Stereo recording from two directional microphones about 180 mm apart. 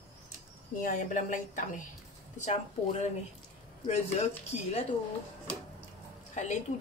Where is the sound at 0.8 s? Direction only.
45° left (ahead or behind).